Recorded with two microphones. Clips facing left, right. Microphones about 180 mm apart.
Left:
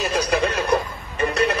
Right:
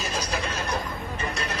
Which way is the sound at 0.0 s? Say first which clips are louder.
Left 9 dB; 65° left (ahead or behind).